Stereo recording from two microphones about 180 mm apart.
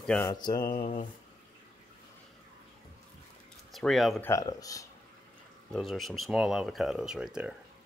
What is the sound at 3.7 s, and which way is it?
Speech, centre (ahead or behind).